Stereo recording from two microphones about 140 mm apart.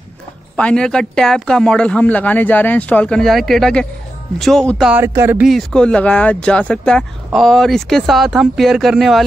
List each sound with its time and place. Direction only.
0.6 s speech: 5° left (ahead or behind)
4.9 s speech: 15° right (ahead or behind)
5.4 s speech: centre (ahead or behind)